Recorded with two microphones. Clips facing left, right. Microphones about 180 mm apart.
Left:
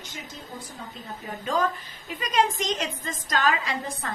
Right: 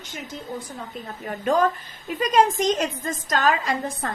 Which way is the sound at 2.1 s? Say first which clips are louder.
Right 5 dB; 45° right (ahead or behind).